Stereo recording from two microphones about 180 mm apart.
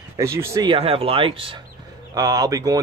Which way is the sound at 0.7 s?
30° right (ahead or behind).